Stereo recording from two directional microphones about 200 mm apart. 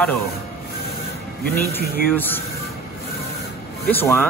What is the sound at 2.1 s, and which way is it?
Speech, 10° left (ahead or behind).